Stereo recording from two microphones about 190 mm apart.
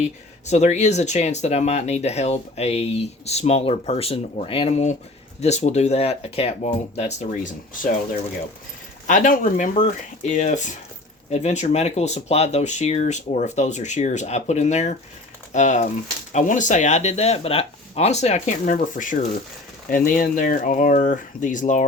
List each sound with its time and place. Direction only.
0.0 s speech: 35° left (ahead or behind)
9.0 s speech: 40° left (ahead or behind)